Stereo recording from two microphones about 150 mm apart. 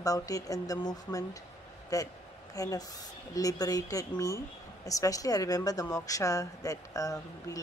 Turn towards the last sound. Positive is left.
turn(degrees=20)  # may be behind; listen again after turning